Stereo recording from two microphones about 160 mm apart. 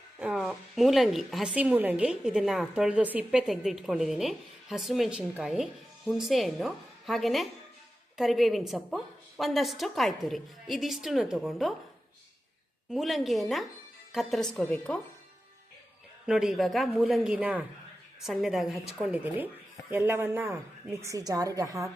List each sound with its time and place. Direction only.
0.2 s a woman's voice: 5° right (ahead or behind)
12.9 s a woman's voice: centre (ahead or behind)
16.2 s a woman's voice: 5° right (ahead or behind); by 21.8 s 20° right (ahead or behind)